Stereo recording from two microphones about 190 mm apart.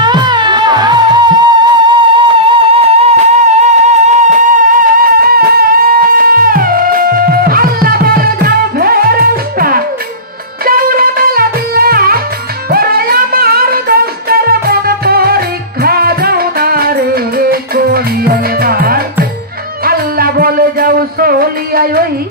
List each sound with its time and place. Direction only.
0.0 s music: 20° right (ahead or behind); by 22.0 s 50° right (ahead or behind)